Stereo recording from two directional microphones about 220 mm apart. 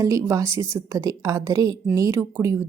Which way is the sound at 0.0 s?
15° right (ahead or behind).